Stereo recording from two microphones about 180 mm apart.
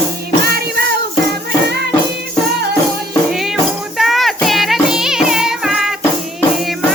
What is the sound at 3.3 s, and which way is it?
Music, centre (ahead or behind).